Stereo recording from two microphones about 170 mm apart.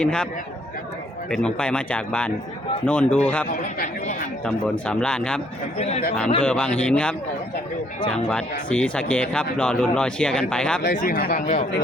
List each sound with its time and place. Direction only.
0.0 s speech: 5° left (ahead or behind)
1.3 s speech: 5° left (ahead or behind)
3.8 s speech: 45° left (ahead or behind)
4.9 s speech: 5° left (ahead or behind)
5.8 s speech: 40° left (ahead or behind)
6.4 s speech: 5° left (ahead or behind)
10.9 s speech: 55° left (ahead or behind)